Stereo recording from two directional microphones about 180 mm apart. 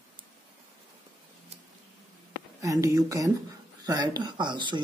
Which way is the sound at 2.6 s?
20° right (ahead or behind).